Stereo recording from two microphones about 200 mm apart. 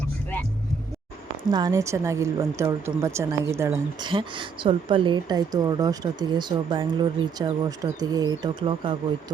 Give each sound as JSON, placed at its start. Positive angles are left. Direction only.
{"t": 1.5, "sound": "speech", "side_deg": -20}
{"t": 4.1, "sound": "a woman's voice", "side_deg": -25}